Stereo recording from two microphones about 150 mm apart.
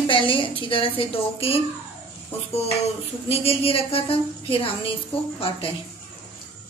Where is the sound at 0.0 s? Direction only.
35° left (ahead or behind).